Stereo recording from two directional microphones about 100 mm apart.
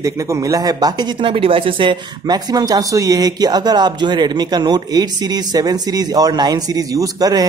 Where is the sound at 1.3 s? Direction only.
65° right (ahead or behind).